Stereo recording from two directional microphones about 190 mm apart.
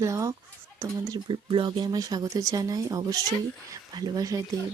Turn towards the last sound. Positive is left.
turn(degrees=-20)  # may be behind; listen again after turning